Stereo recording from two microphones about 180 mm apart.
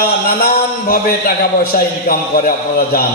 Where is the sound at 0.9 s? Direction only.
55° left (ahead or behind).